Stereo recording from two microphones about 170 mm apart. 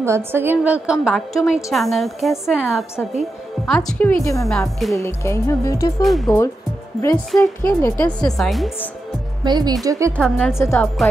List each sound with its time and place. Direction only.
0.0 s a woman's voice: 15° right (ahead or behind); by 4.1 s centre (ahead or behind)
4.2 s speech: 20° left (ahead or behind)
4.5 s a woman's voice: centre (ahead or behind)
4.9 s speech: 15° left (ahead or behind)
6.0 s a woman's voice: centre (ahead or behind)
9.4 s speech: 25° right (ahead or behind)
10.1 s a woman's voice: 5° left (ahead or behind)
10.6 s speech: 15° left (ahead or behind)